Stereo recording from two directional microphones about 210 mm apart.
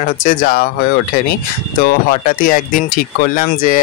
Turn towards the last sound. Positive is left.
turn(degrees=40)  # may be behind; listen again after turning